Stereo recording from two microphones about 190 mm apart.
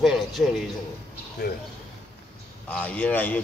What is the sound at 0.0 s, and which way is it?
Speech, centre (ahead or behind).